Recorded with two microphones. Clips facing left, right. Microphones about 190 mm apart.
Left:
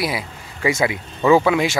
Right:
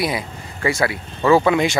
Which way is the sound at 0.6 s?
20° left (ahead or behind).